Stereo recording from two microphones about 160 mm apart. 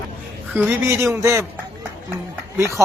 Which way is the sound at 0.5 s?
15° right (ahead or behind).